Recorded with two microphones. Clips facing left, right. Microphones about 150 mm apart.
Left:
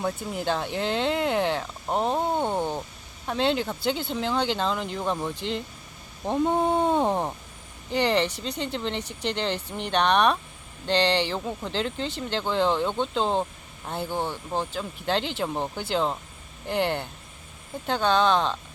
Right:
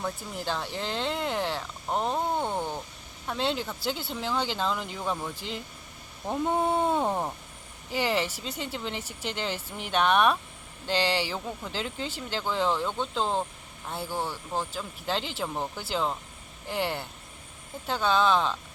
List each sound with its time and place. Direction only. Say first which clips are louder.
0.0 s speech: left 5 dB; 5° left (ahead or behind)
2.4 s speech: left 4 dB; 20° left (ahead or behind)
3.2 s speech: left 5 dB; centre (ahead or behind)
14.1 s speech: left 2 dB; 20° left (ahead or behind)
14.7 s speech: left 4 dB; 5° right (ahead or behind)
15.5 s speech: left 3 dB; 20° left (ahead or behind)
15.8 s speech: left 4 dB; 5° right (ahead or behind)